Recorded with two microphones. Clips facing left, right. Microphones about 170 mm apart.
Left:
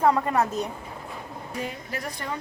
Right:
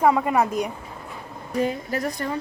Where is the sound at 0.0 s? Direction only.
5° right (ahead or behind).